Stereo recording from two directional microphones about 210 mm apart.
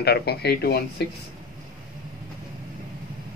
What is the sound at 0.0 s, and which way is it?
Speech, 50° left (ahead or behind).